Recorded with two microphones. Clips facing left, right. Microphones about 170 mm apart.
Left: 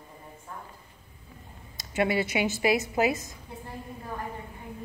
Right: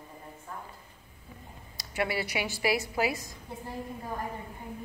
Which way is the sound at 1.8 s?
20° left (ahead or behind).